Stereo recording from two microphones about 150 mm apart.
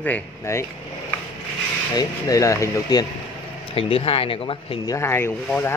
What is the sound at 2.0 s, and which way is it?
Speech, 25° left (ahead or behind).